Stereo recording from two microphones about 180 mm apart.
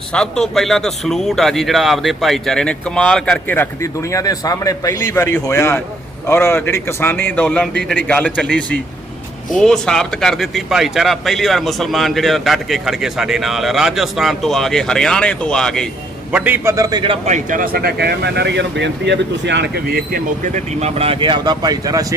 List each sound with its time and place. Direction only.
0.1 s a man's voice: 5° left (ahead or behind)
16.3 s a man's voice: 10° right (ahead or behind); by 17.2 s 25° right (ahead or behind)
17.2 s speech: 45° right (ahead or behind); by 22.0 s 20° right (ahead or behind)